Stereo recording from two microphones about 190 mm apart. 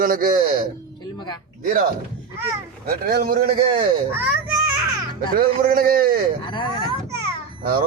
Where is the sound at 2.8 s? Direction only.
55° right (ahead or behind).